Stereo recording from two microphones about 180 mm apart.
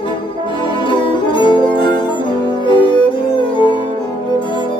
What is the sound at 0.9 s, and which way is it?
Music, 25° left (ahead or behind).